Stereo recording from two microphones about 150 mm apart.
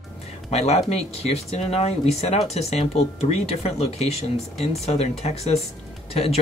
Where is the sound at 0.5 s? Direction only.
45° left (ahead or behind).